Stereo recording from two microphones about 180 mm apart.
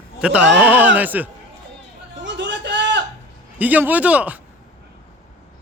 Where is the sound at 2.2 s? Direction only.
80° right.